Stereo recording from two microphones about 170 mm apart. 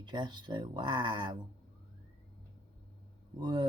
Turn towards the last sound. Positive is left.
turn(degrees=-30)  # may be behind; listen again after turning